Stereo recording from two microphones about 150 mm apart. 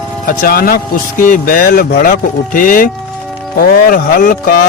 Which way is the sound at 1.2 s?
65° left (ahead or behind).